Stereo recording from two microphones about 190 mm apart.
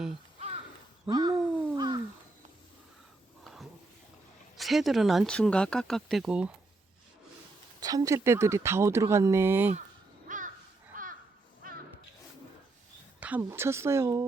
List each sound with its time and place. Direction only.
0.3 s crow: 35° right (ahead or behind)
1.0 s a sound: 20° right (ahead or behind)
3.4 s a sound: centre (ahead or behind)
4.5 s speech: centre (ahead or behind)
7.8 s speech: 20° right (ahead or behind)
10.2 s crow: 45° right (ahead or behind)
13.1 s speech: 10° right (ahead or behind)